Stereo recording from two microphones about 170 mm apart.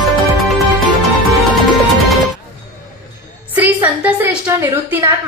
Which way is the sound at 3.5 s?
10° right (ahead or behind).